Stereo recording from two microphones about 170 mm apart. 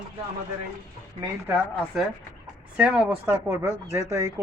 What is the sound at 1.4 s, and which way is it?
Speech, 5° right (ahead or behind).